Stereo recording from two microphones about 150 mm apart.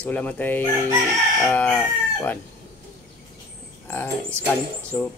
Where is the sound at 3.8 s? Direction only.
15° left (ahead or behind).